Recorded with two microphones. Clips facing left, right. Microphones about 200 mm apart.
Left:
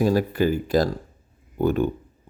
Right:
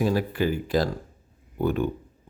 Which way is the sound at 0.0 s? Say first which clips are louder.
Left 4 dB; 45° left (ahead or behind).